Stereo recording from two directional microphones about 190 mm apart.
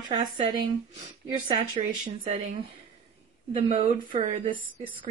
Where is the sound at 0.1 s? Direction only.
25° right (ahead or behind).